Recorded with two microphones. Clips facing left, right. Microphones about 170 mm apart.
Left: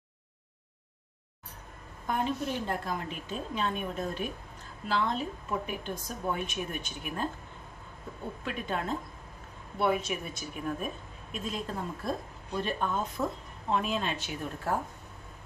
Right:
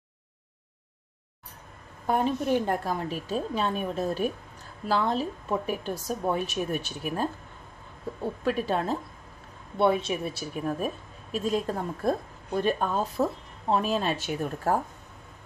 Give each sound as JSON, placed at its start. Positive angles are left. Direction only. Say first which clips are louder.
{"t": 2.6, "sound": "a woman's voice", "louder": "right 5 dB", "side_deg": -40}
{"t": 8.5, "sound": "a woman's voice", "louder": "right 7 dB", "side_deg": -35}